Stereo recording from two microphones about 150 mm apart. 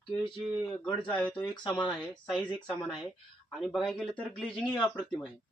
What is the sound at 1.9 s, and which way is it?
Speech, centre (ahead or behind).